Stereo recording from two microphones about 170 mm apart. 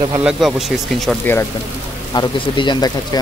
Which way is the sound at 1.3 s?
10° left (ahead or behind).